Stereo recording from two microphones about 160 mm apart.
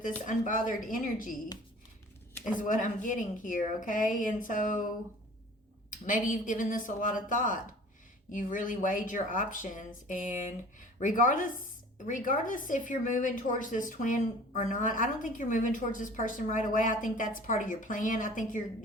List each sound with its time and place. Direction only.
0.3 s a woman's voice: 55° left (ahead or behind)
2.5 s a woman's voice: 55° left (ahead or behind)
5.9 s a woman's voice: 55° left (ahead or behind)